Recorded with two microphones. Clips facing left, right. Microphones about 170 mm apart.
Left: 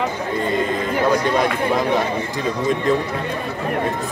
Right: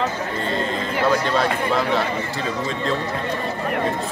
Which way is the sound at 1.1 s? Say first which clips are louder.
Left 2 dB; 15° left (ahead or behind).